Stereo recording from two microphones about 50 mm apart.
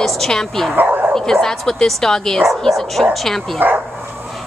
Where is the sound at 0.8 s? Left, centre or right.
Right.